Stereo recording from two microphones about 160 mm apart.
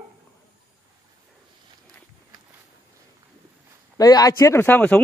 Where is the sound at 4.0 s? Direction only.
25° left (ahead or behind).